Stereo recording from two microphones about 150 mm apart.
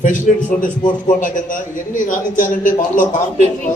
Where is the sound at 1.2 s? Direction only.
65° left (ahead or behind).